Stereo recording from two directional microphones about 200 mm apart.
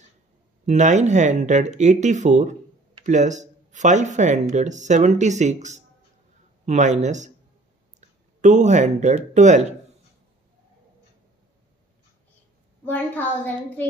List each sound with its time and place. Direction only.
0.7 s speech: 35° right (ahead or behind)
8.4 s speech: 35° right (ahead or behind)
12.8 s a woman's voice: 10° left (ahead or behind)